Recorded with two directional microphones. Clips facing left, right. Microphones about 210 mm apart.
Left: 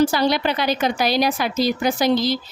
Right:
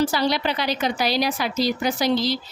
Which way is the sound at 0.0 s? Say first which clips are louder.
Left 3 dB; 50° left (ahead or behind).